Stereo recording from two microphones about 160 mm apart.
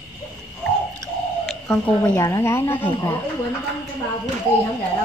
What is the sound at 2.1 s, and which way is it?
Speech, 20° left (ahead or behind).